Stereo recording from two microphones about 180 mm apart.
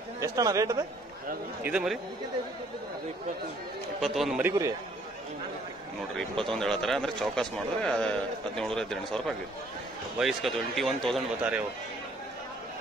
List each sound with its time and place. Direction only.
0.2 s a man's voice: 20° right (ahead or behind)
1.6 s speech: 5° right (ahead or behind)
4.0 s a man's voice: centre (ahead or behind)
6.5 s speech: 5° left (ahead or behind)